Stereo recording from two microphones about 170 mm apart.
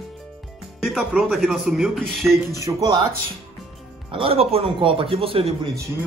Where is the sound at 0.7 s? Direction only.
Centre (ahead or behind).